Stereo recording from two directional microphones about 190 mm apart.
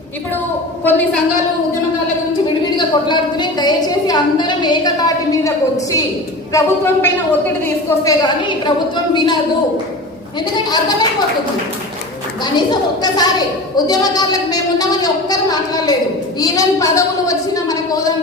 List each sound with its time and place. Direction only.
0.9 s a woman's voice: 10° left (ahead or behind)
2.7 s a woman's voice: 25° left (ahead or behind)
12.5 s a woman's voice: 20° left (ahead or behind)